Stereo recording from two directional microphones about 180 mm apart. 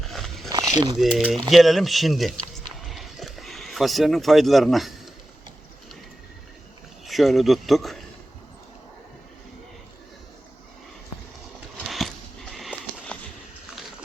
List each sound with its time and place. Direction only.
0.1 s dog: centre (ahead or behind)
0.5 s a sound: 20° right (ahead or behind)
0.9 s speech: 5° right (ahead or behind)
2.7 s a sound: centre (ahead or behind)
7.0 s speech: centre (ahead or behind)
11.9 s sniff: centre (ahead or behind)